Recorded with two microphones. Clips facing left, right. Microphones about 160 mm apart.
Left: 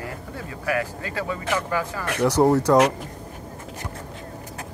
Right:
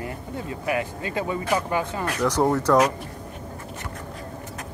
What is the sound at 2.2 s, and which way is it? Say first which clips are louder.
Speech: left 3 dB; 10° left (ahead or behind).